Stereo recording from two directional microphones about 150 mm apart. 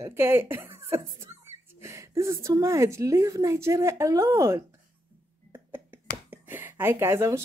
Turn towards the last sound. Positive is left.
turn(degrees=-20)  # may be behind; listen again after turning